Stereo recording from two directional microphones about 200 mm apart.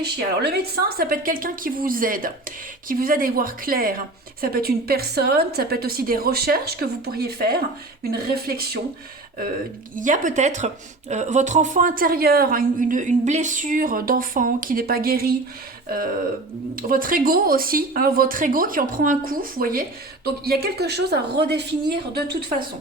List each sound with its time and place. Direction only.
0.0 s a woman's voice: 55° right (ahead or behind)
9.9 s a woman's voice: 40° right (ahead or behind)